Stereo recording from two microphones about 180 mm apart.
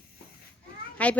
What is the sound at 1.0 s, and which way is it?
Speech, 10° left (ahead or behind).